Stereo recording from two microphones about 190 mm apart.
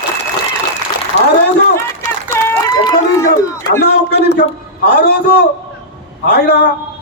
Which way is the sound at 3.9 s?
60° left (ahead or behind).